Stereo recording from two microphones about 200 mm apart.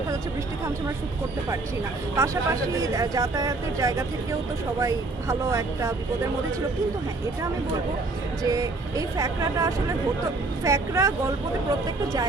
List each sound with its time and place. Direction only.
2.1 s speech: 15° right (ahead or behind)
8.4 s speech: 15° right (ahead or behind)